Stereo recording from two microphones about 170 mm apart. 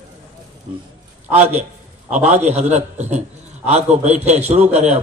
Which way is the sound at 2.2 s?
40° right (ahead or behind).